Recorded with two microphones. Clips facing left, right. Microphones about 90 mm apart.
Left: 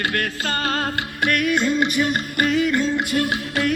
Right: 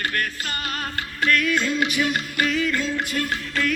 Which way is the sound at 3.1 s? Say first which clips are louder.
Left 4 dB; 55° left (ahead or behind).